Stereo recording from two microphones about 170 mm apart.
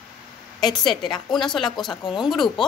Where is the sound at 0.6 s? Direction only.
25° left (ahead or behind).